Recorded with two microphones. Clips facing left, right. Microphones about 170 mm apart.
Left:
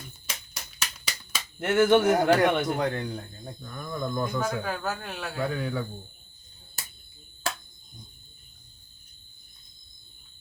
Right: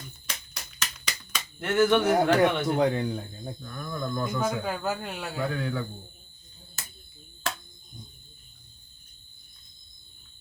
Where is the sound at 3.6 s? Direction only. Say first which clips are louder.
Left 2 dB; 15° left (ahead or behind).